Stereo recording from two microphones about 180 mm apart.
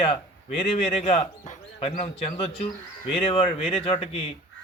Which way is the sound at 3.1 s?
30° left (ahead or behind).